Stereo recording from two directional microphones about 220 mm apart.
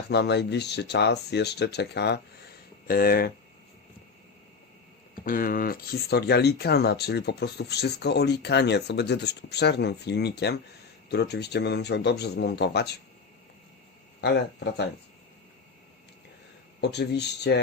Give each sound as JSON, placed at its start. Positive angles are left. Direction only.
{"t": 0.1, "sound": "speech", "side_deg": 50}
{"t": 5.2, "sound": "speech", "side_deg": 40}
{"t": 14.2, "sound": "speech", "side_deg": 50}
{"t": 16.8, "sound": "speech", "side_deg": 50}